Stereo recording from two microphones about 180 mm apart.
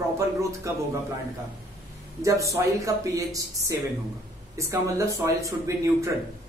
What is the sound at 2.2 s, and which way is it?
Speech, 15° right (ahead or behind).